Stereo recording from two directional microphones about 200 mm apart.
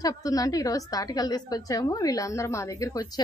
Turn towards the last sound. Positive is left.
turn(degrees=20)  # may be behind; listen again after turning